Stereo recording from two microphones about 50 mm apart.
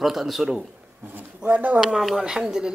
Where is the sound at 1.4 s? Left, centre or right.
Right.